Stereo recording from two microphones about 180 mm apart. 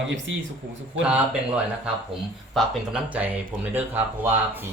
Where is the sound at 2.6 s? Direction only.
5° right (ahead or behind).